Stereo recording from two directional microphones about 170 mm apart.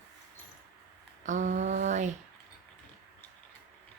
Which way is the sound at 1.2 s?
45° right (ahead or behind).